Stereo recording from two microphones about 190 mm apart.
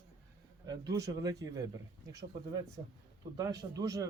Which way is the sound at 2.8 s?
25° right (ahead or behind).